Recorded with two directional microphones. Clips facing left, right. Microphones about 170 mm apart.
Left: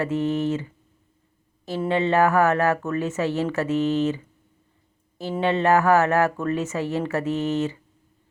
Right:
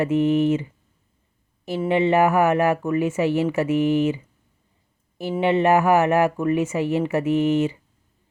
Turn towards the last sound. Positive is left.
turn(degrees=-15)  # may be behind; listen again after turning